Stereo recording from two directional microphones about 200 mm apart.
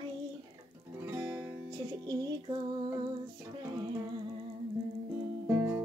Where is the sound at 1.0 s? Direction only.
10° right (ahead or behind).